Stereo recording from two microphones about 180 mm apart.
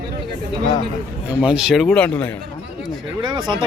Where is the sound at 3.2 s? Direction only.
25° right (ahead or behind).